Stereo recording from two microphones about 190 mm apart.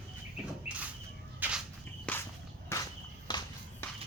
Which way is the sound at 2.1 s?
5° left (ahead or behind).